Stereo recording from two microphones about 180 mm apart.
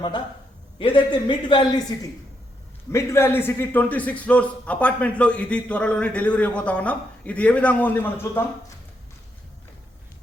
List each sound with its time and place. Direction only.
0.8 s a man's voice: 30° left (ahead or behind)
2.9 s a man's voice: 15° left (ahead or behind)